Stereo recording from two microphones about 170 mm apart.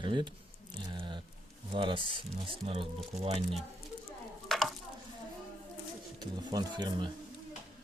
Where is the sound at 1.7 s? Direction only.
30° right (ahead or behind).